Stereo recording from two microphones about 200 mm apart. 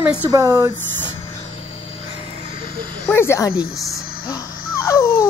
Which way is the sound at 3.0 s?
15° left (ahead or behind).